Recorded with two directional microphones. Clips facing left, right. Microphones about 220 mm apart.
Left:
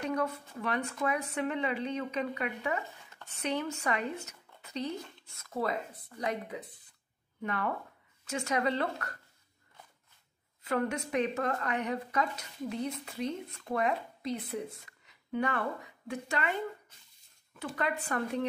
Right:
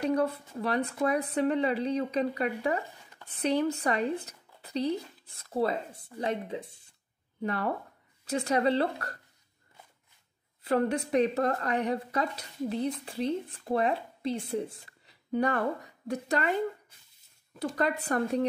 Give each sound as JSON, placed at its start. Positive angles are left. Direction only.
{"t": 0.0, "sound": "a woman's voice", "side_deg": -35}
{"t": 10.6, "sound": "a woman's voice", "side_deg": -30}
{"t": 17.6, "sound": "a woman's voice", "side_deg": -40}